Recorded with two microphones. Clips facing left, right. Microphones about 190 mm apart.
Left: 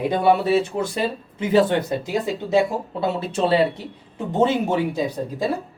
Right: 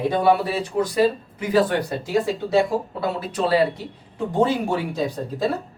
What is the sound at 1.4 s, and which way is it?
Speech, 25° left (ahead or behind).